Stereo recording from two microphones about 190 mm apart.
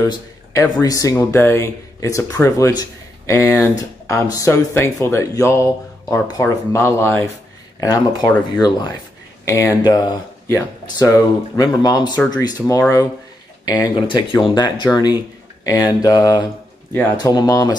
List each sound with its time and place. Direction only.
0.0 s speech: 15° left (ahead or behind)
13.7 s speech: 20° left (ahead or behind)